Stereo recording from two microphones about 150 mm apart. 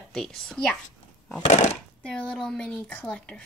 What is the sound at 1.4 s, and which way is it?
Speech, 50° left (ahead or behind).